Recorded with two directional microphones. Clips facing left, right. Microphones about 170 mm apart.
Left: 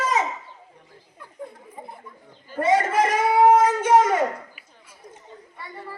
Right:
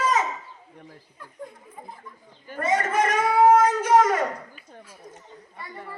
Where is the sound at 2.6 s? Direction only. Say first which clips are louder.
Left 3 dB; 30° left (ahead or behind).